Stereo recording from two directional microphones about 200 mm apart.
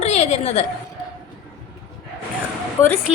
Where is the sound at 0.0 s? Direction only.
35° left (ahead or behind).